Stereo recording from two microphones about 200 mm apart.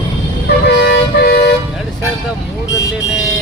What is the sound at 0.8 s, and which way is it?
Vehicle, 55° left (ahead or behind).